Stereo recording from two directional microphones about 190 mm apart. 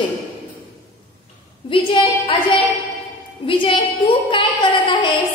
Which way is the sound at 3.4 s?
30° left (ahead or behind).